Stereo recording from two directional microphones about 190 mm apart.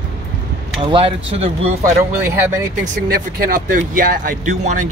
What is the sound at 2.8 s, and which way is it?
Speech, 50° right (ahead or behind).